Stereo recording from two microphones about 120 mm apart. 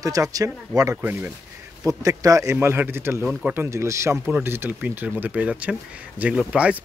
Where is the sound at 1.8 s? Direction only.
30° right (ahead or behind); by 6.8 s 10° right (ahead or behind).